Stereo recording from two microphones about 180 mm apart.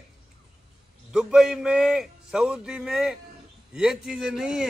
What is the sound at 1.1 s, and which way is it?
A man's voice, 5° right (ahead or behind).